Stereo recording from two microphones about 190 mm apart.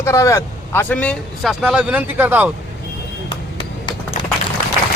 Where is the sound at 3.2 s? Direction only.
25° left (ahead or behind).